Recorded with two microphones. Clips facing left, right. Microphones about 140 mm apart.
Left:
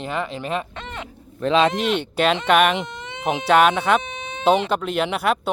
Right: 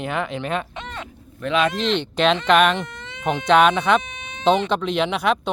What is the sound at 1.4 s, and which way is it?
Speech, 30° left (ahead or behind).